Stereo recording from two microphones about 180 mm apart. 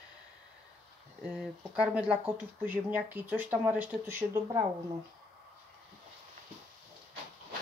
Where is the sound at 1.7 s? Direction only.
5° right (ahead or behind).